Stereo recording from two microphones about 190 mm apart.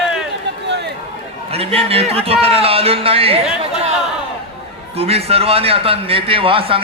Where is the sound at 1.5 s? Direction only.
30° right (ahead or behind).